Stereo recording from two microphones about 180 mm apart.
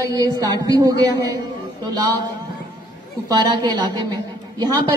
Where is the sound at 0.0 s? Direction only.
20° right (ahead or behind).